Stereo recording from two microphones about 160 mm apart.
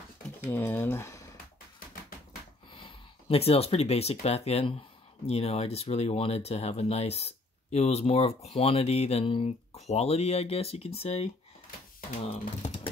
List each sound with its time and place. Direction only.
0.5 s speech: 15° left (ahead or behind)
2.7 s speech: 35° left (ahead or behind)
12.3 s speech: 40° left (ahead or behind)